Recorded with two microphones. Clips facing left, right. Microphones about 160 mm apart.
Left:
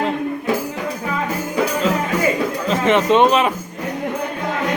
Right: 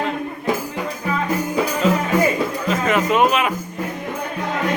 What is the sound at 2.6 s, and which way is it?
Speech, 25° left (ahead or behind).